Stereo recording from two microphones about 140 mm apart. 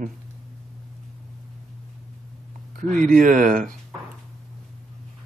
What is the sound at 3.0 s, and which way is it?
Speech, 70° right (ahead or behind).